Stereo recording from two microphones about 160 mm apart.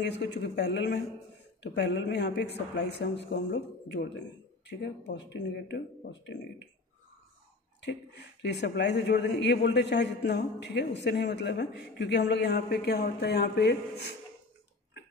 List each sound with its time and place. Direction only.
0.0 s a man's voice: 90° left
7.8 s a man's voice: 90° left